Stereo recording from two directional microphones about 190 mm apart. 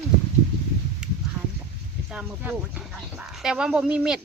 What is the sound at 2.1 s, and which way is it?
Speech, 5° right (ahead or behind).